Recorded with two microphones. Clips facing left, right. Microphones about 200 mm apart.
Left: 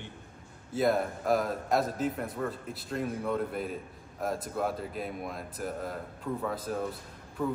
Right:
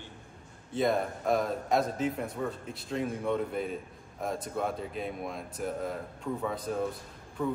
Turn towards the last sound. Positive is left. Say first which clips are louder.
# even
turn(degrees=5)  # may be behind; listen again after turning